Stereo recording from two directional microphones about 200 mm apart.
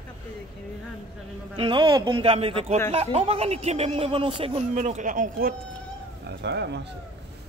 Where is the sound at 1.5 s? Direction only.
25° right (ahead or behind); by 5.5 s 45° right (ahead or behind).